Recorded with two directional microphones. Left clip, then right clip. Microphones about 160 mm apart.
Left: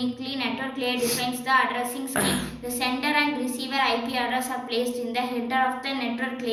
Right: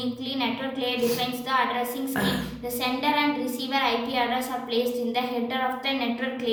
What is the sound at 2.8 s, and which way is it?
A woman's voice, 45° right (ahead or behind).